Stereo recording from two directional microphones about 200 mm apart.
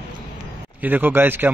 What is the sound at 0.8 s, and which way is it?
Speech, 10° right (ahead or behind).